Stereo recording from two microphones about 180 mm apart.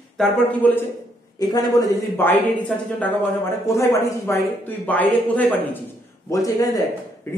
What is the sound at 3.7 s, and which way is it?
A man's voice, 15° left (ahead or behind).